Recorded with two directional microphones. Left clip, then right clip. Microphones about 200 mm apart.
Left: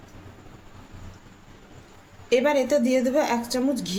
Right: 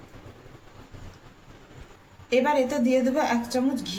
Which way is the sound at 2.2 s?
55° left (ahead or behind).